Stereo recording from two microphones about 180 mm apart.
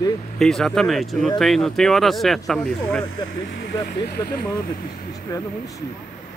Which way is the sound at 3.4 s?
85° left.